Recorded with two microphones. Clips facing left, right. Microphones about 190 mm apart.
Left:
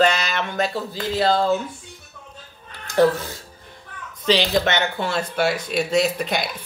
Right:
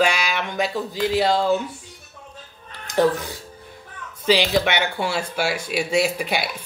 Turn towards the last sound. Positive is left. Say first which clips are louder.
# left 1 dB
turn(degrees=-10)  # may be behind; listen again after turning